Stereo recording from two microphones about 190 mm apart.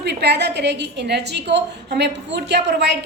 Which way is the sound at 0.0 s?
60° right (ahead or behind).